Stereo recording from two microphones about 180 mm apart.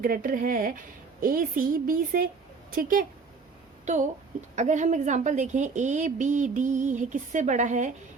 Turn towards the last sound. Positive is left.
turn(degrees=-45)  # may be behind; listen again after turning